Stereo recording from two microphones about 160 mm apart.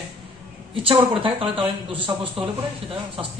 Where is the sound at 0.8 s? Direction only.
35° right (ahead or behind).